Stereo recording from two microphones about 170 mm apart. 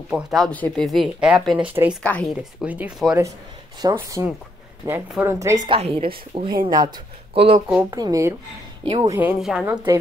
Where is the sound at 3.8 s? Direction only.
20° right (ahead or behind).